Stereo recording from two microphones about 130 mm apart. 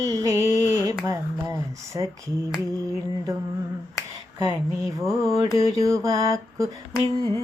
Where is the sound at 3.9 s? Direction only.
35° left (ahead or behind).